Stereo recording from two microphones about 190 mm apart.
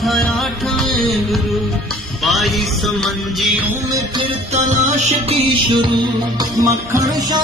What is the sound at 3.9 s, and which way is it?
Music, 20° right (ahead or behind).